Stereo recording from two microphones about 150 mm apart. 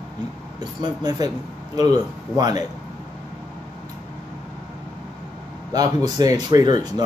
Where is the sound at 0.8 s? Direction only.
30° right (ahead or behind).